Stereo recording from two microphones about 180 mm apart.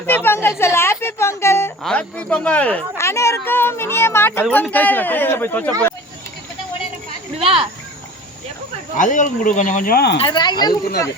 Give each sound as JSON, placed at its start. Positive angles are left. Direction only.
{"t": 0.0, "sound": "a woman's voice", "side_deg": 10}
{"t": 7.3, "sound": "speech", "side_deg": -30}
{"t": 9.0, "sound": "speech", "side_deg": 45}
{"t": 10.2, "sound": "speech", "side_deg": 25}